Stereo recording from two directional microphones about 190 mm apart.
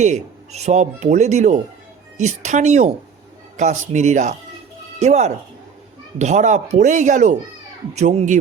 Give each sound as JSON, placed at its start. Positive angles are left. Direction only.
{"t": 0.0, "sound": "speech", "side_deg": -35}